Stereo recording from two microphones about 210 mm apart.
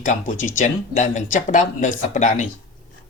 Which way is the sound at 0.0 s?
35° left (ahead or behind).